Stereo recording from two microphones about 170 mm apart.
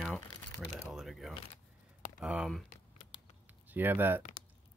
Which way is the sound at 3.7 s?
10° right (ahead or behind).